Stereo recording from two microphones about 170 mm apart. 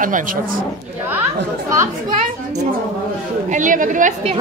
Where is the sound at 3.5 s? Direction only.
50° right (ahead or behind).